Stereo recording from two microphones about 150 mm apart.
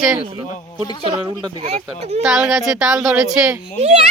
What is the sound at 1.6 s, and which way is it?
Speech, 45° right (ahead or behind).